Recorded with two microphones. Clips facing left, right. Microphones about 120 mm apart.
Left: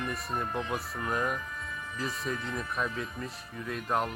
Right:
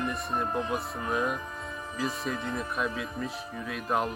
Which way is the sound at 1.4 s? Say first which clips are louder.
Right 2 dB; 30° right (ahead or behind).